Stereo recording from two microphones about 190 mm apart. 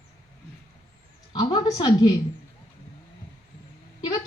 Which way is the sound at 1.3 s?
20° left (ahead or behind).